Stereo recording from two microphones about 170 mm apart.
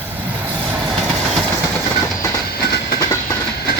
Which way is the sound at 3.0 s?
20° left (ahead or behind).